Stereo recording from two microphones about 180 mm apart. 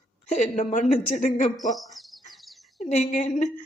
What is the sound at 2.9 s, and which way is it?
Speech, 40° left (ahead or behind).